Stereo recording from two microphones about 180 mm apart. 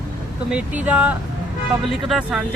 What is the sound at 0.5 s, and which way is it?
Speech, 10° right (ahead or behind).